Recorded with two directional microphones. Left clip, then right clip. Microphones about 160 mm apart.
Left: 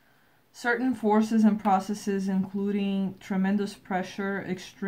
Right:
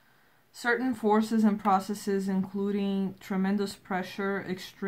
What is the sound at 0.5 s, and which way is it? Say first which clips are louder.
Speech: left 1 dB; 20° left (ahead or behind).